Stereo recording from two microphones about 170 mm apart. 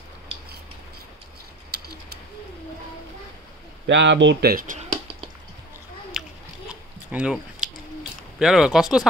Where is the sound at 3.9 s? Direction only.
90° right; by 4.8 s 55° right (ahead or behind).